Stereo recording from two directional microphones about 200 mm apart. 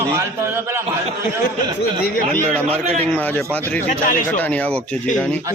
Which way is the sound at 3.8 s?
40° left (ahead or behind).